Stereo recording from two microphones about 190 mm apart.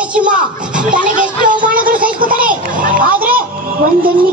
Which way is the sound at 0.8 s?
45° right (ahead or behind).